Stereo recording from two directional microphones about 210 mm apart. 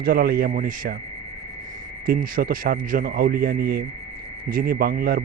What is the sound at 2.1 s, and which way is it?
A man's voice, 45° right (ahead or behind).